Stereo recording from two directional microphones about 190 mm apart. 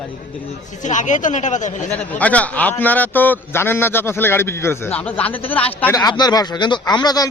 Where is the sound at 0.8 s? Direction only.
40° left (ahead or behind).